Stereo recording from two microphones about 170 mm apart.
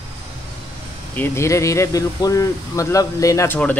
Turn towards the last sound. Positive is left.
turn(degrees=20)  # may be behind; listen again after turning